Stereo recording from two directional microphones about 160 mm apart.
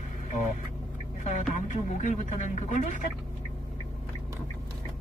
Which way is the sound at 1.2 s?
50° left (ahead or behind).